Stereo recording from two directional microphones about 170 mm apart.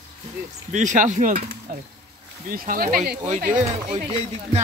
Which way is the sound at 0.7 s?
45° right (ahead or behind).